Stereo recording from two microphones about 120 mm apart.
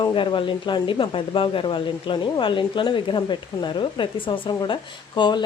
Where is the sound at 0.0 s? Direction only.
40° left (ahead or behind).